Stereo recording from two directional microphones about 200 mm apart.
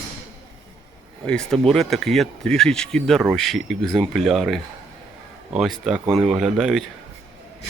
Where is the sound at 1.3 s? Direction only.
Centre (ahead or behind).